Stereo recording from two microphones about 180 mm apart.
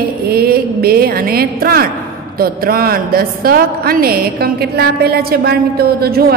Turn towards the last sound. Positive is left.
turn(degrees=-60)  # may be behind; listen again after turning